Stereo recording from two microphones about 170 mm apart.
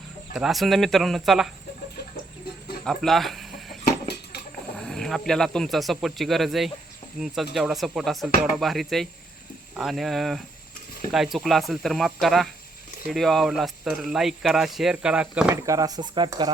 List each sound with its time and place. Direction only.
0.3 s speech: centre (ahead or behind)
2.8 s chicken: centre (ahead or behind)
4.1 s a sound: 70° left (ahead or behind)
4.8 s speech: 5° left (ahead or behind)
15.6 s speech: 20° right (ahead or behind)